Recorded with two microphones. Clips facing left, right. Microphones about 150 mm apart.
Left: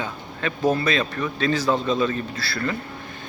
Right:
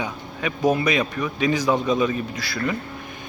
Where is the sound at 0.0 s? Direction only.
15° right (ahead or behind).